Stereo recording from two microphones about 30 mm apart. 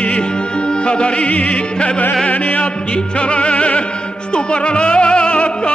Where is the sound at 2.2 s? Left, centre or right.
Left.